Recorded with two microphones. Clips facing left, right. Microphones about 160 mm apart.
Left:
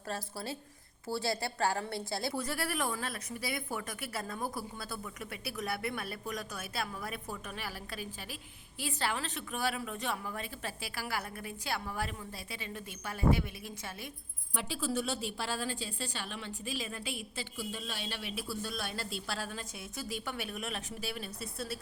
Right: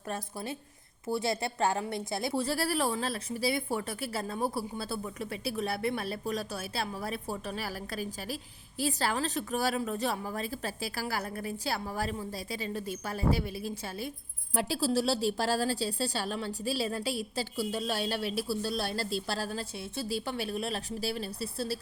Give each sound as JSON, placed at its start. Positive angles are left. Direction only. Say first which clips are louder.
{"t": 0.1, "sound": "a woman's voice", "louder": "right 2 dB", "side_deg": -20}